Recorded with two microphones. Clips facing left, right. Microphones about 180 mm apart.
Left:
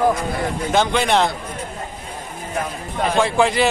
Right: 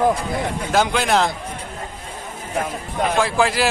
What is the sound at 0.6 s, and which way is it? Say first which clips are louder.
Speech: left 1 dB; centre (ahead or behind).